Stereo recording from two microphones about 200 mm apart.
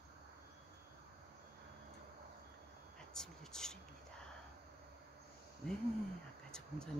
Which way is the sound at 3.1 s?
5° left (ahead or behind).